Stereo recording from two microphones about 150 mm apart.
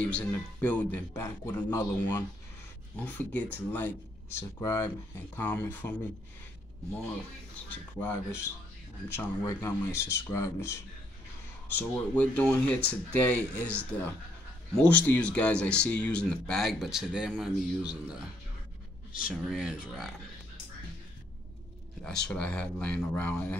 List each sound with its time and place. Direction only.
0.0 s speech: 10° left (ahead or behind)
7.7 s a man's voice: 10° left (ahead or behind); by 18.3 s 5° right (ahead or behind)
19.3 s a man's voice: centre (ahead or behind)
22.0 s speech: 5° left (ahead or behind)